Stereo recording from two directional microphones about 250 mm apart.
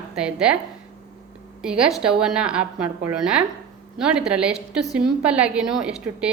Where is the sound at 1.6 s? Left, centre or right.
Centre.